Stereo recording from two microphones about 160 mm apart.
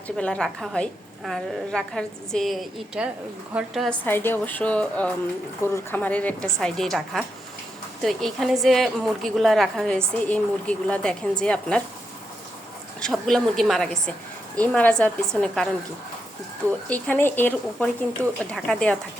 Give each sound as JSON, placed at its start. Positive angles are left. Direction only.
{"t": 0.2, "sound": "a woman's voice", "side_deg": 5}
{"t": 4.0, "sound": "a woman's voice", "side_deg": 15}
{"t": 13.0, "sound": "a woman's voice", "side_deg": 5}
{"t": 16.9, "sound": "a woman's voice", "side_deg": 10}
{"t": 18.2, "sound": "speech", "side_deg": -15}
{"t": 18.5, "sound": "a woman's voice", "side_deg": 5}